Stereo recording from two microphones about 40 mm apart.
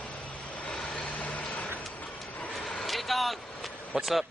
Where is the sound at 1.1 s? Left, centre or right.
Left.